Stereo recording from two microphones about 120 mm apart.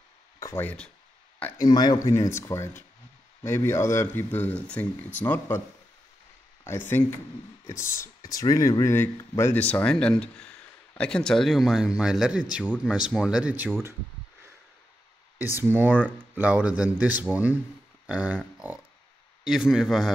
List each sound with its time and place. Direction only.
0.6 s speech: 15° left (ahead or behind)
1.6 s speech: 35° left (ahead or behind); by 5.6 s 15° left (ahead or behind)
6.6 s speech: 20° left (ahead or behind); by 13.7 s 10° right (ahead or behind)
15.3 s speech: 20° right (ahead or behind)
18.0 s a sound: 10° right (ahead or behind)
19.4 s speech: 5° right (ahead or behind)